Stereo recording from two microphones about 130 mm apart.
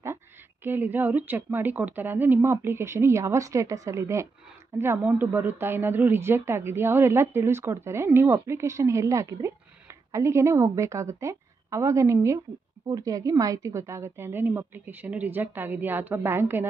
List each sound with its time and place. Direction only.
0.7 s a woman's voice: 15° right (ahead or behind)